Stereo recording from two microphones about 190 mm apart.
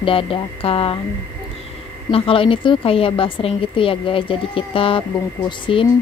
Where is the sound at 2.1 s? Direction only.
30° left (ahead or behind).